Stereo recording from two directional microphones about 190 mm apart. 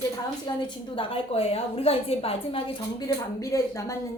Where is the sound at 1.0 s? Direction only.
30° left (ahead or behind).